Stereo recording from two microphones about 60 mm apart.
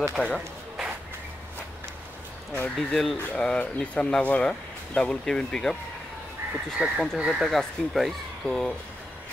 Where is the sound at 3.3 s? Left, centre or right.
Centre.